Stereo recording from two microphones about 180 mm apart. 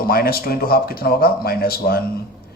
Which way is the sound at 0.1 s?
55° left (ahead or behind).